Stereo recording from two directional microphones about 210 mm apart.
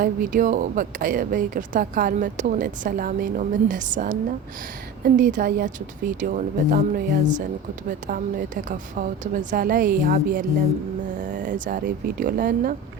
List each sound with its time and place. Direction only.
0.0 s speech: 40° right (ahead or behind)